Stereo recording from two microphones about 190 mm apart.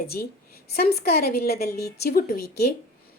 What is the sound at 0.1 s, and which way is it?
A woman's voice, 50° left (ahead or behind).